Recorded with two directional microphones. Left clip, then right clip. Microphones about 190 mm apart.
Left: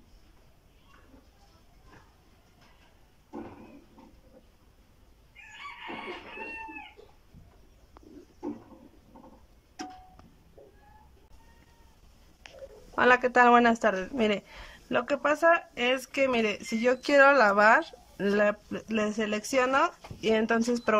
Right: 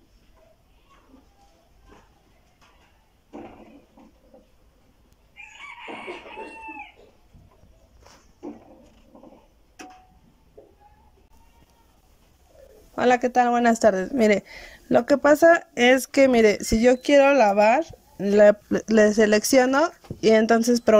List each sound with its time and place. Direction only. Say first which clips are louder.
12.9 s speech: right 2 dB; 15° right (ahead or behind)